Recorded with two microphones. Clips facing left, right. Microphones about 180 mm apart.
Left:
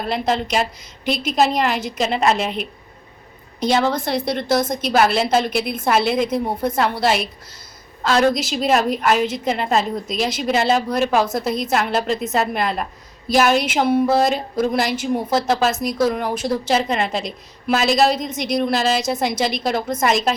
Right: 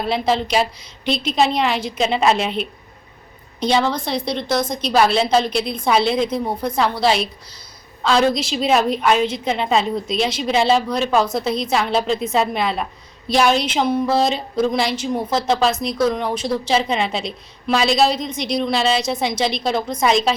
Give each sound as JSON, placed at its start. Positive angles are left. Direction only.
{"t": 0.0, "sound": "a woman's voice", "side_deg": 0}
{"t": 18.2, "sound": "speech", "side_deg": 45}
{"t": 18.5, "sound": "a woman's voice", "side_deg": 0}